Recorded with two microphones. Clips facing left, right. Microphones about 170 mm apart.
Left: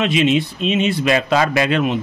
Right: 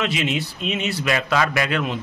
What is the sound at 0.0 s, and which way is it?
Speech, 20° left (ahead or behind).